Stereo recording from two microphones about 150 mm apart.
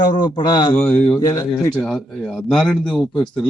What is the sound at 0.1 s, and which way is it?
Speech, 30° left (ahead or behind).